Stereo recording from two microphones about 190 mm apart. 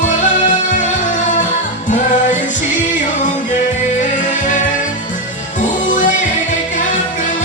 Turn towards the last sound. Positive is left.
turn(degrees=45)  # may be behind; listen again after turning